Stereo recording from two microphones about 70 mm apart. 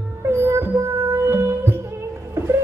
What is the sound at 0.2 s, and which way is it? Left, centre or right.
Music, right.